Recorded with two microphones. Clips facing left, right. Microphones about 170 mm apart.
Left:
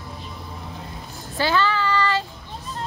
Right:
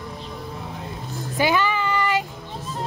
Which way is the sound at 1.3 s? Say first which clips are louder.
Right 1 dB; 15° right (ahead or behind).